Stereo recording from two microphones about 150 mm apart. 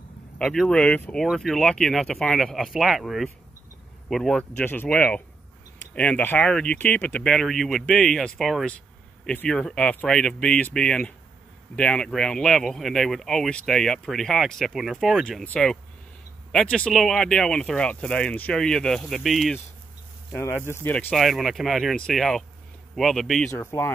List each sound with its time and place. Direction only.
0.4 s speech: 5° left (ahead or behind)
20.3 s speech: 15° left (ahead or behind)
23.5 s speech: 15° left (ahead or behind)